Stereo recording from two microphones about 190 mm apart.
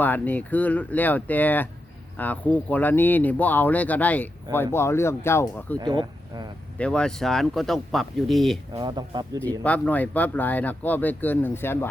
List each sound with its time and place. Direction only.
0.0 s speech: 10° left (ahead or behind)
5.7 s speech: 25° right (ahead or behind)
6.7 s speech: 5° left (ahead or behind)
8.7 s speech: 20° right (ahead or behind)
9.6 s speech: 5° left (ahead or behind)